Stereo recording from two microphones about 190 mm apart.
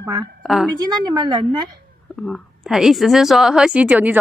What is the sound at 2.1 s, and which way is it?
A woman's voice, centre (ahead or behind).